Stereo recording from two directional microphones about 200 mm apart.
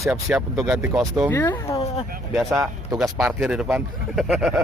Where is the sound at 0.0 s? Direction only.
5° right (ahead or behind).